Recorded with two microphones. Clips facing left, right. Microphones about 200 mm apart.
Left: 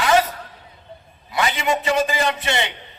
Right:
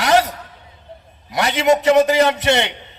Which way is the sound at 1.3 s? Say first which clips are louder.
Right 3 dB; 75° right (ahead or behind).